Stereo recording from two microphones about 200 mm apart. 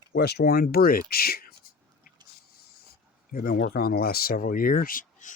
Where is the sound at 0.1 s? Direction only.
55° left (ahead or behind).